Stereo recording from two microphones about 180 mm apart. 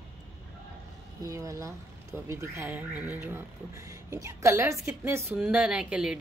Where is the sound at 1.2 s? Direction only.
20° right (ahead or behind).